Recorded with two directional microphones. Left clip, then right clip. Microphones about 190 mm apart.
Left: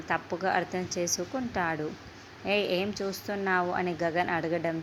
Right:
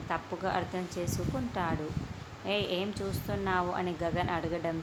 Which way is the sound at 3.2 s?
20° left (ahead or behind).